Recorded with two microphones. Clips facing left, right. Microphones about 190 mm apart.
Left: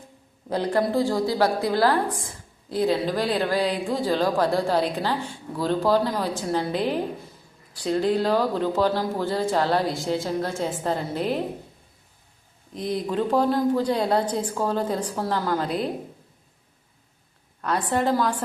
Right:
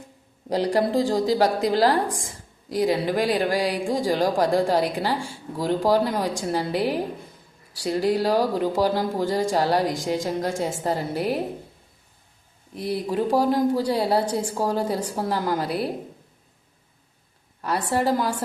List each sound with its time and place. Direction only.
0.7 s speech: 15° right (ahead or behind)
12.7 s speech: 10° right (ahead or behind)
17.6 s speech: 10° right (ahead or behind)